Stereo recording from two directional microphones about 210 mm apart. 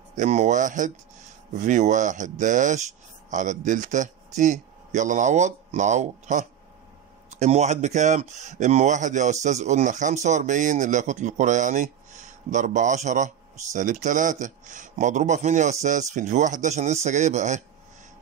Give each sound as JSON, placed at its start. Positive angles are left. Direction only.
{"t": 0.1, "sound": "a man's voice", "side_deg": -35}